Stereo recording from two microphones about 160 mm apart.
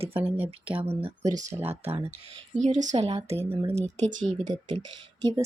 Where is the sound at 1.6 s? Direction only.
40° right (ahead or behind).